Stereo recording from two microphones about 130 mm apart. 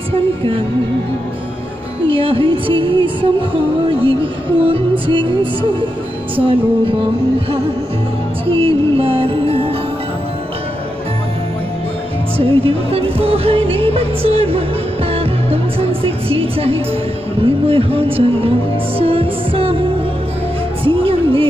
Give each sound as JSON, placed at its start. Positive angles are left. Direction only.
{"t": 2.0, "sound": "music", "side_deg": -45}
{"t": 4.6, "sound": "music", "side_deg": -45}
{"t": 12.4, "sound": "music", "side_deg": -45}
{"t": 20.8, "sound": "music", "side_deg": -45}